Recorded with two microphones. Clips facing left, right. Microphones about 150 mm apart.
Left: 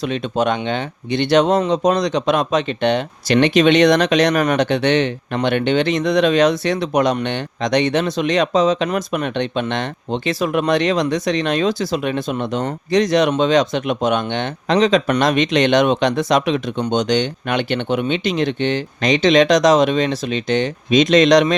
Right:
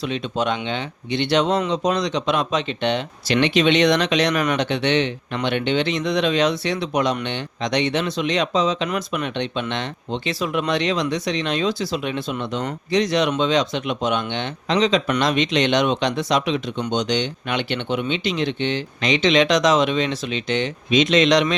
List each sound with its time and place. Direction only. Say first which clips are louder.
0.0 s speech: left 4 dB; 45° left (ahead or behind)